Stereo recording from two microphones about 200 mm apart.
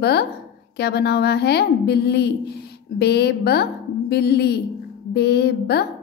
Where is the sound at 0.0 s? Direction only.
55° left (ahead or behind).